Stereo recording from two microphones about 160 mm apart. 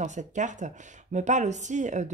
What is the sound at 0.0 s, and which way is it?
Speech, 50° right (ahead or behind).